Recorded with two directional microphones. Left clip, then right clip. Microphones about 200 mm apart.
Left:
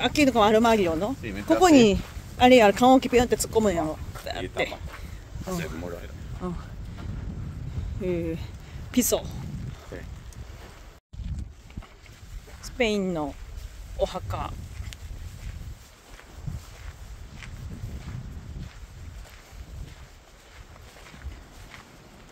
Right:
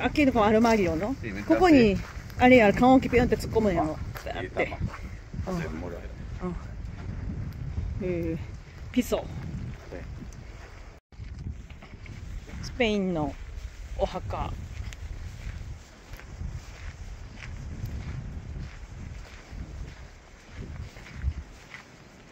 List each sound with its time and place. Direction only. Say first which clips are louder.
0.0 s speech: left 3 dB; 25° left (ahead or behind)
1.2 s speech: even; 65° left (ahead or behind)
1.6 s speech: left 3 dB; 15° left (ahead or behind)
6.4 s speech: left 1 dB; 10° left (ahead or behind)
8.0 s speech: left 2 dB; 15° left (ahead or behind)
12.7 s speech: left 1 dB; 10° left (ahead or behind)